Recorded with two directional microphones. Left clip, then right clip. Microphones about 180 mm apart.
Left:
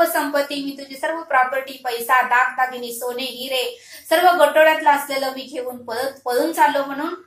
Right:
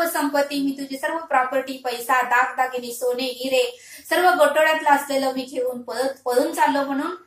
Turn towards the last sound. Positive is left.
turn(degrees=10)  # may be behind; listen again after turning